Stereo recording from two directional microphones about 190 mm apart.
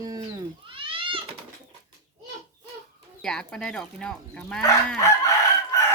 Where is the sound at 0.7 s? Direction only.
30° right (ahead or behind).